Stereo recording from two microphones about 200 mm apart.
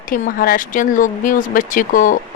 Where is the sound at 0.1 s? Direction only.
45° left (ahead or behind).